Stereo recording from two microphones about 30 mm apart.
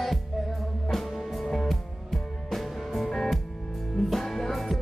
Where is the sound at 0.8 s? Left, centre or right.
Centre.